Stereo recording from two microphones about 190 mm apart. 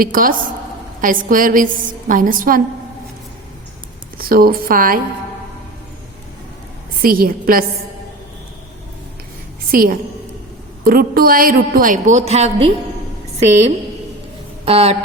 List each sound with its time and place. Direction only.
0.0 s a woman's voice: 45° right (ahead or behind)
4.2 s a woman's voice: 50° right (ahead or behind)
7.0 s a woman's voice: 50° right (ahead or behind)
9.7 s a woman's voice: 50° right (ahead or behind); by 14.9 s 30° right (ahead or behind)